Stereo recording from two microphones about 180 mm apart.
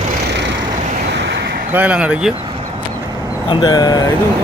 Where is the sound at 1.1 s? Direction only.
70° right (ahead or behind).